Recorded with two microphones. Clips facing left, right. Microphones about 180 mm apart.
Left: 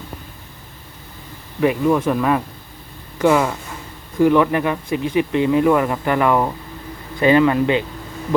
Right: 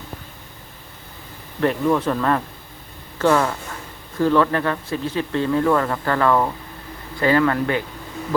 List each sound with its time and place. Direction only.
1.6 s speech: 10° left (ahead or behind)